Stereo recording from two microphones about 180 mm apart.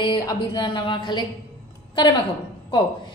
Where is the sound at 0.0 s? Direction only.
25° left (ahead or behind).